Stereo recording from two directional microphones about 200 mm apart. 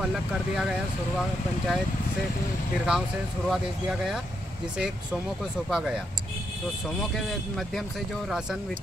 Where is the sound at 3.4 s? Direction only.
Centre (ahead or behind).